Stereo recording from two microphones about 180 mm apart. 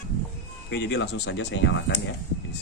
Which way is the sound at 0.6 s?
80° left.